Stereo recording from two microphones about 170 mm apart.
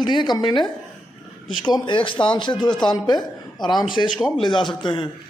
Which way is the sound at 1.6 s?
25° left (ahead or behind).